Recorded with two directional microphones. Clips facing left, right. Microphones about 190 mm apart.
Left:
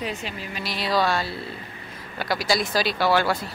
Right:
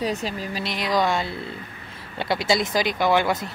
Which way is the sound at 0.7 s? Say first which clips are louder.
Even; 20° right (ahead or behind).